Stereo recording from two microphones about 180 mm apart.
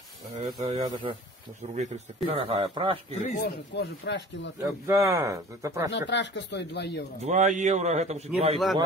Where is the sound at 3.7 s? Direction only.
75° left (ahead or behind).